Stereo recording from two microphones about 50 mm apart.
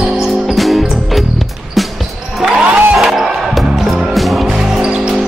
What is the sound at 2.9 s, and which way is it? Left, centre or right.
Music, centre.